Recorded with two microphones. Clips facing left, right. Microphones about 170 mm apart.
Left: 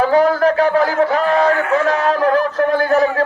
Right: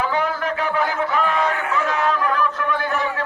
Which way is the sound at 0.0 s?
40° left (ahead or behind).